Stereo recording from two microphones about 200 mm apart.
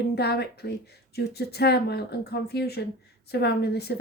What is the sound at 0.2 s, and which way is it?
A woman's voice, 55° left (ahead or behind).